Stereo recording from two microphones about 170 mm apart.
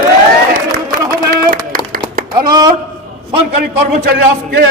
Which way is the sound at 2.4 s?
25° right (ahead or behind).